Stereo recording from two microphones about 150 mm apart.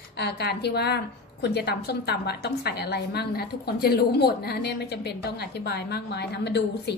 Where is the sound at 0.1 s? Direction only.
90° left.